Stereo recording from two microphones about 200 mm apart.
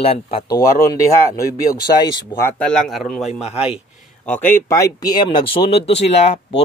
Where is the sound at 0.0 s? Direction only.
30° left (ahead or behind).